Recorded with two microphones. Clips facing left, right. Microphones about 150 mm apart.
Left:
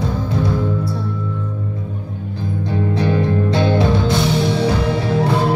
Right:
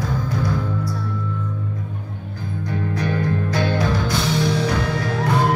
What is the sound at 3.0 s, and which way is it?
Music, 25° left (ahead or behind).